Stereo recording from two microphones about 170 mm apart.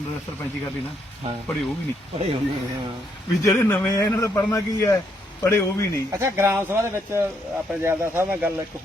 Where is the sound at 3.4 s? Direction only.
15° left (ahead or behind).